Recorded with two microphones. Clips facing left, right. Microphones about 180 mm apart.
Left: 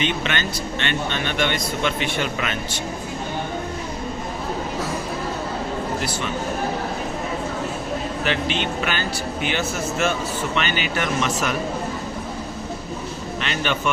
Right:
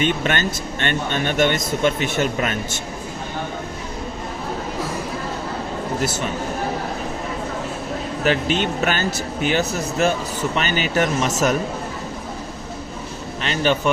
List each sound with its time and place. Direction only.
0.0 s speech: 45° right (ahead or behind)
6.0 s speech: 45° right (ahead or behind)
8.2 s speech: 40° right (ahead or behind)
13.4 s speech: 35° right (ahead or behind)